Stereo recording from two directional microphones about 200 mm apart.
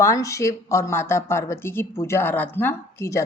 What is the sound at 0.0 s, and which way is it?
Speech, 15° left (ahead or behind).